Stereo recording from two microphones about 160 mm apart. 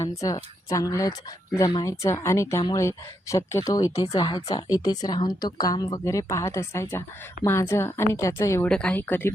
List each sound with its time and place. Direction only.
0.1 s a woman's voice: 20° left (ahead or behind)